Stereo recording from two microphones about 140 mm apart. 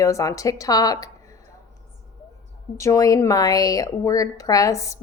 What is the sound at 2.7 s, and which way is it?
A woman's voice, 20° left (ahead or behind).